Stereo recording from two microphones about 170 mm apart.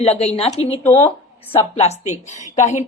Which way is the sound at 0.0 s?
35° left (ahead or behind).